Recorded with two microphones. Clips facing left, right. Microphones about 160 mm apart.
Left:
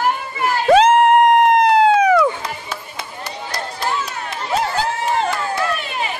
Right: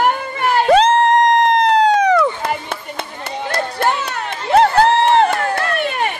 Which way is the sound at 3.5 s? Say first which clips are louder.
Right 6 dB; 60° right (ahead or behind).